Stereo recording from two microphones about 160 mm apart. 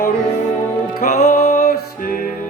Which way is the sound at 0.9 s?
75° left (ahead or behind).